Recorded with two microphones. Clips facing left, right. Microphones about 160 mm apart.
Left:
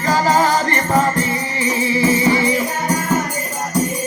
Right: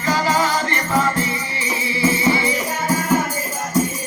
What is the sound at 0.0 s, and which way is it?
Music, 40° left (ahead or behind).